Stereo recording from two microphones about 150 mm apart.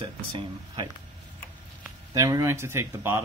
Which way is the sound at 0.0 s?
35° right (ahead or behind).